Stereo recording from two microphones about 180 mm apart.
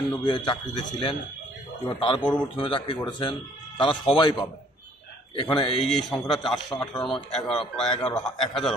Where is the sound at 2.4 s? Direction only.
30° left (ahead or behind).